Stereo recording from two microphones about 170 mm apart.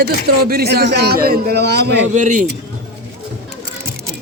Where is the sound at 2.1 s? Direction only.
50° right (ahead or behind).